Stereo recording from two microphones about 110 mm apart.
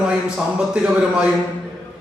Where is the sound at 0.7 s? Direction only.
10° right (ahead or behind).